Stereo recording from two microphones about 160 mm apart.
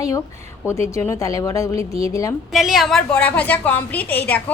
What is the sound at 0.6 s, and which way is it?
A woman's voice, 15° left (ahead or behind).